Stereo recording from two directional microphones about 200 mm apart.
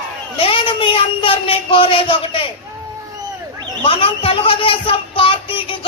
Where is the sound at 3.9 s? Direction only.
25° left (ahead or behind).